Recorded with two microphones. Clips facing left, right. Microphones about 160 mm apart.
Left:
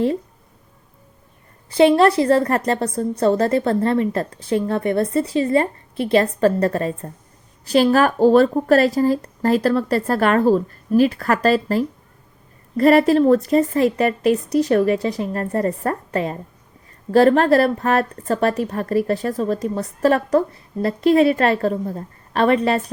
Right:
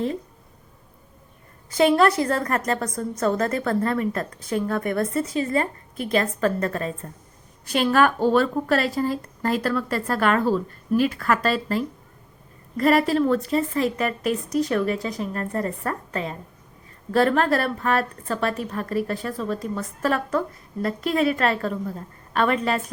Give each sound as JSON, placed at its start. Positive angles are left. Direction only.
{"t": 1.8, "sound": "a woman's voice", "side_deg": 30}